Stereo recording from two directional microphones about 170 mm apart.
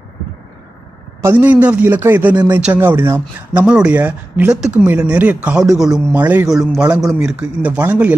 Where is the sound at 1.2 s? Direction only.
10° right (ahead or behind).